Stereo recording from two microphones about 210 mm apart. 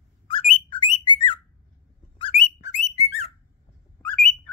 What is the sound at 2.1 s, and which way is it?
Whistling, 25° left (ahead or behind).